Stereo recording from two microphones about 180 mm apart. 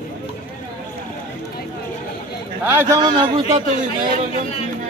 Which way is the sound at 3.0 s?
25° right (ahead or behind).